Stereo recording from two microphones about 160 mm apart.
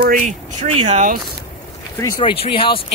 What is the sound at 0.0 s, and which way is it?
Speech, 55° right (ahead or behind).